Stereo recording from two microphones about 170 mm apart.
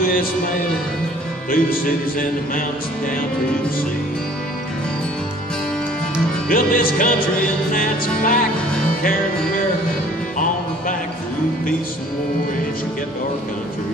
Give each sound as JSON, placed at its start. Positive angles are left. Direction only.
{"t": 1.5, "sound": "speech", "side_deg": 55}
{"t": 6.5, "sound": "music", "side_deg": 55}
{"t": 7.7, "sound": "speech", "side_deg": 55}